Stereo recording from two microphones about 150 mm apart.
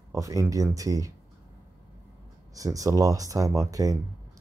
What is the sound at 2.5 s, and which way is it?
Speech, 20° right (ahead or behind).